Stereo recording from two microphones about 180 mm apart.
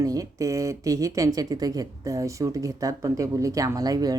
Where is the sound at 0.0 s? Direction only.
20° right (ahead or behind).